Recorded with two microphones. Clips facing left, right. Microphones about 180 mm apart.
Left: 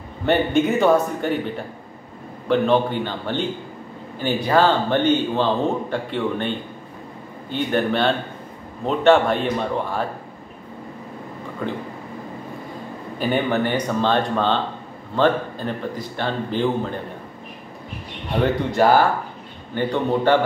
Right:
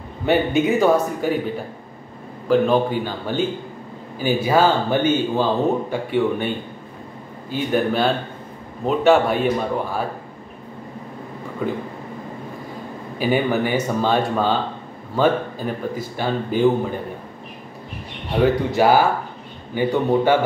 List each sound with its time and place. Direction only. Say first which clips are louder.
0.2 s a man's voice: even; 5° right (ahead or behind)
7.5 s a man's voice: right 1 dB; 5° right (ahead or behind)
11.6 s speech: right 3 dB; 5° right (ahead or behind)
13.2 s speech: right 1 dB; 5° right (ahead or behind)
18.4 s speech: right 2 dB; 10° right (ahead or behind)